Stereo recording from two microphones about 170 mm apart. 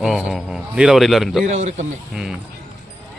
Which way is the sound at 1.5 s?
45° right (ahead or behind).